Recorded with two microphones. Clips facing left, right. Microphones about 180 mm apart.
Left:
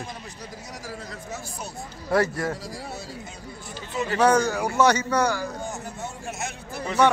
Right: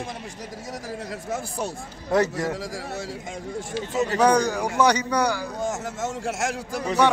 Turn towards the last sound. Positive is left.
turn(degrees=-90)